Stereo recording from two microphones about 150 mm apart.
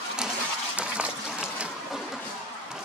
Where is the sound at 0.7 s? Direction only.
10° right (ahead or behind).